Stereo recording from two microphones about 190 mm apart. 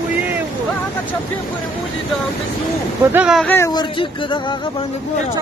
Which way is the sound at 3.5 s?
15° left (ahead or behind).